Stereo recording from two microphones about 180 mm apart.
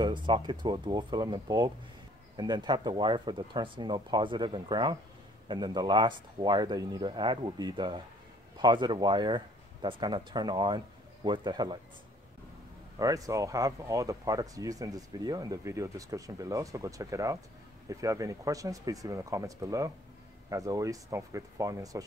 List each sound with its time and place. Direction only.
0.0 s speech: 25° right (ahead or behind)
13.0 s speech: 20° right (ahead or behind)